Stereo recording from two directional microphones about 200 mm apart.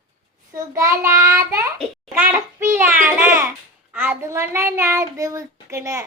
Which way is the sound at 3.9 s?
10° right (ahead or behind).